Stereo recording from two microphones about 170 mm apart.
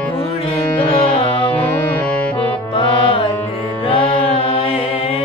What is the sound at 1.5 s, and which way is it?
Music, 10° left (ahead or behind).